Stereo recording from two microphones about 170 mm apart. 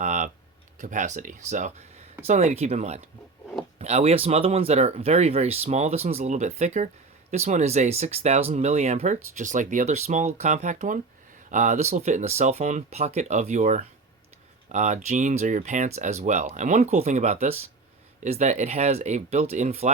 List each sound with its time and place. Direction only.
0.0 s computer keyboard: 45° right (ahead or behind)
0.8 s speech: 45° right (ahead or behind)